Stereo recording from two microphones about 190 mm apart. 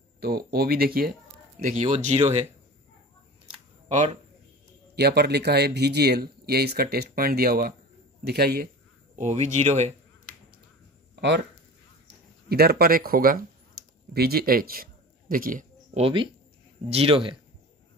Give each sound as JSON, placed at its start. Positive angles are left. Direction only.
{"t": 0.2, "sound": "speech", "side_deg": -55}
{"t": 1.6, "sound": "speech", "side_deg": -40}
{"t": 3.9, "sound": "speech", "side_deg": -40}
{"t": 4.9, "sound": "speech", "side_deg": -60}
{"t": 9.2, "sound": "speech", "side_deg": -35}
{"t": 11.1, "sound": "speech", "side_deg": -65}
{"t": 12.4, "sound": "a man's voice", "side_deg": -55}
{"t": 16.0, "sound": "speech", "side_deg": -25}